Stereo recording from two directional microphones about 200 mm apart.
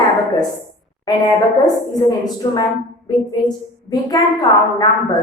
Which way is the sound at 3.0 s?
20° left (ahead or behind).